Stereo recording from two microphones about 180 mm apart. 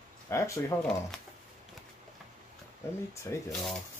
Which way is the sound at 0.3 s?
15° left (ahead or behind).